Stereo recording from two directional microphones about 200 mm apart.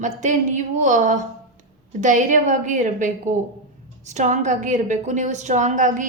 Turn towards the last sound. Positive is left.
turn(degrees=-40)  # may be behind; listen again after turning